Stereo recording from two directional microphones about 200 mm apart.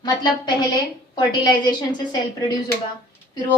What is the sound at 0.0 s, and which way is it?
A woman's voice, 20° left (ahead or behind).